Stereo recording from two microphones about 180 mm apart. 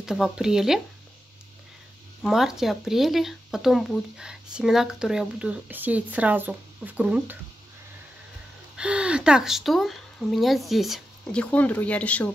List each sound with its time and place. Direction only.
0.0 s speech: 5° right (ahead or behind)
2.2 s speech: centre (ahead or behind)
8.7 s speech: 5° right (ahead or behind)